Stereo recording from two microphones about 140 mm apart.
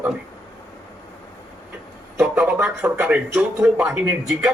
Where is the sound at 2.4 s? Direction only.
15° right (ahead or behind).